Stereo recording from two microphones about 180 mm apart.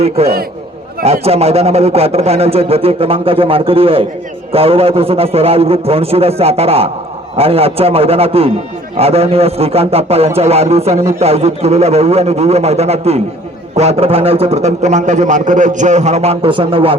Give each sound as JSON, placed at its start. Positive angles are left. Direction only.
{"t": 1.0, "sound": "a man's voice", "side_deg": -35}